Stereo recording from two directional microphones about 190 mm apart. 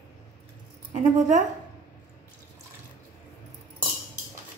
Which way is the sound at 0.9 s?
40° right (ahead or behind).